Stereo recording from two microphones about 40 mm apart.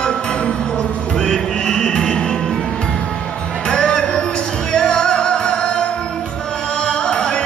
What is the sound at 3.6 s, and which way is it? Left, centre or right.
Music, left.